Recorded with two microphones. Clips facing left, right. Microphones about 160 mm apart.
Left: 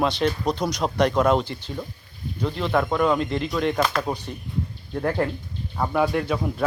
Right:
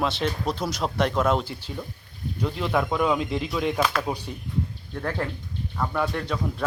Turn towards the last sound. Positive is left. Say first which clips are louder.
# left 4 dB
turn(degrees=10)  # may be behind; listen again after turning